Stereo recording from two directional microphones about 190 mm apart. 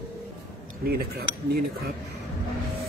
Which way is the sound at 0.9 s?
55° right (ahead or behind).